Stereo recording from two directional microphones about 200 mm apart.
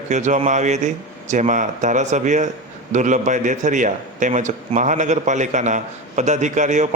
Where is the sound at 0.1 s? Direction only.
35° right (ahead or behind).